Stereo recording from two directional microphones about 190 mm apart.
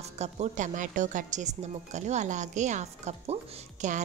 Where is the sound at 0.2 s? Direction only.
40° right (ahead or behind).